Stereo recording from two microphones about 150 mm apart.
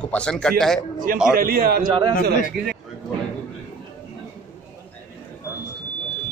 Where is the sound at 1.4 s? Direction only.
80° right.